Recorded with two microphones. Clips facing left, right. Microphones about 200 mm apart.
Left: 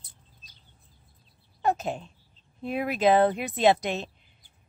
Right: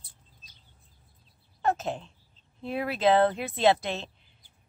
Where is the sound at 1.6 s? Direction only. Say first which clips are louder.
Left 1 dB; 15° left (ahead or behind).